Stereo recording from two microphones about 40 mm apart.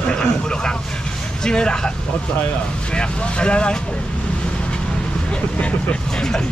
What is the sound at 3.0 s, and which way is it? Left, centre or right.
Speech, left.